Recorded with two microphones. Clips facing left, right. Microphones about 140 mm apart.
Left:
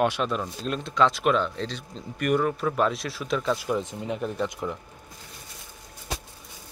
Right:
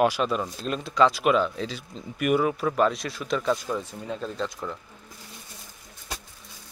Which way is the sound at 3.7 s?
20° left (ahead or behind).